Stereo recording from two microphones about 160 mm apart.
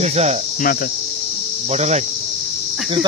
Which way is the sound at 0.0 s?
45° right (ahead or behind).